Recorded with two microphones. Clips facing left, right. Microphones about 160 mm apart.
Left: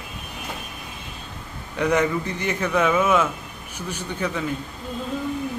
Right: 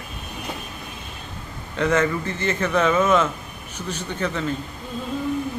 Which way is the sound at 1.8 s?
15° left (ahead or behind).